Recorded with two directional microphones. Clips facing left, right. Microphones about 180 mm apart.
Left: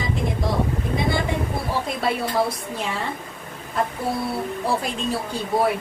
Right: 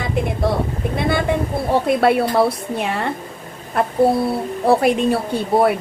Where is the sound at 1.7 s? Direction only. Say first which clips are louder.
Right 11 dB; 60° right (ahead or behind).